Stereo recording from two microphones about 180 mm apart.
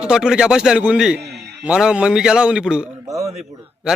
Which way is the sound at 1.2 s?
70° right (ahead or behind).